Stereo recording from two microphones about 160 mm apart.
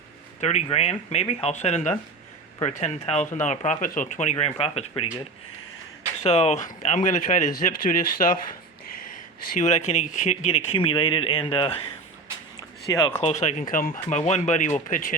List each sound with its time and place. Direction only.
0.3 s speech: 45° left (ahead or behind)
6.1 s speech: 40° left (ahead or behind); by 8.4 s 60° left (ahead or behind)
9.6 s speech: 45° left (ahead or behind)
12.5 s a sound: 20° left (ahead or behind)
13.2 s speech: 45° left (ahead or behind)